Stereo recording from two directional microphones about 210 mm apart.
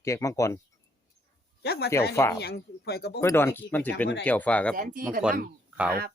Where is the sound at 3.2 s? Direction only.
10° left (ahead or behind).